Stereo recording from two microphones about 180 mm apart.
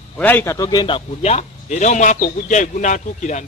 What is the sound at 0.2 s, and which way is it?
A man's voice, 10° left (ahead or behind).